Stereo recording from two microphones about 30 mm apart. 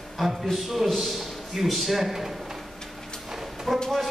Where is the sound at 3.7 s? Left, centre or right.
Centre.